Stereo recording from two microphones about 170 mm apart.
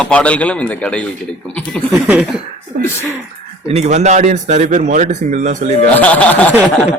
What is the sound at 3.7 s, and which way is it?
Speech, 40° right (ahead or behind).